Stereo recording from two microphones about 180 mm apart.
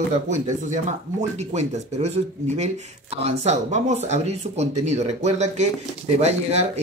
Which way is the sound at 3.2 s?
40° right (ahead or behind).